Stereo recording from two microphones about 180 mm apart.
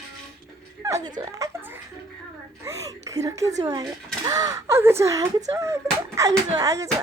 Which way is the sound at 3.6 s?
20° right (ahead or behind).